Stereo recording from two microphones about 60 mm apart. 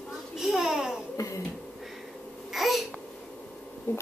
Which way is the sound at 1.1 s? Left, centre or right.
Left.